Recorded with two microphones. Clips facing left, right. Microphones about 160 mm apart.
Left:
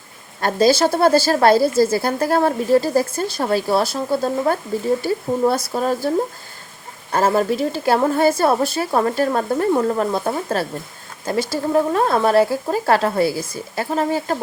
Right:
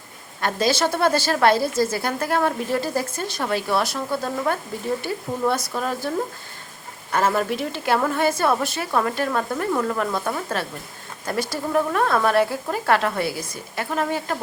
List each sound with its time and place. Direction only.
0.4 s speech: 35° left (ahead or behind)
11.7 s speech: 30° left (ahead or behind)